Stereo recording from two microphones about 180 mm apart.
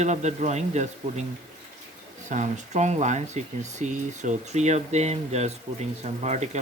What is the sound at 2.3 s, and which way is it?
Speech, 40° right (ahead or behind).